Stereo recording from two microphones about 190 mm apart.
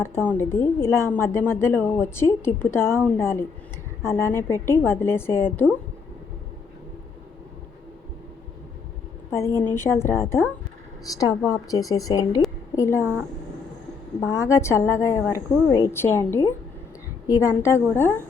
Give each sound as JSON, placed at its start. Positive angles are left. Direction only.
{"t": 0.0, "sound": "a woman's voice", "side_deg": 10}
{"t": 9.3, "sound": "a woman's voice", "side_deg": 15}
{"t": 13.0, "sound": "speech", "side_deg": -10}
{"t": 14.3, "sound": "a woman's voice", "side_deg": 15}